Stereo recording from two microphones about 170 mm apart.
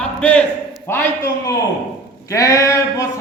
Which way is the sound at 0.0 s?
5° left (ahead or behind).